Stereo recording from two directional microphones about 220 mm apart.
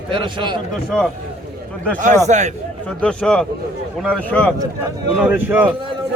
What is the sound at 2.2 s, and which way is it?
Speech, 30° right (ahead or behind).